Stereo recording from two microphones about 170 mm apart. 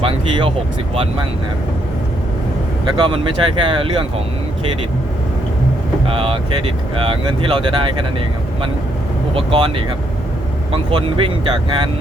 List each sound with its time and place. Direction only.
0.0 s speech: 30° right (ahead or behind)
3.0 s speech: 30° right (ahead or behind)
6.1 s speech: 30° right (ahead or behind)
9.3 s speech: 30° right (ahead or behind)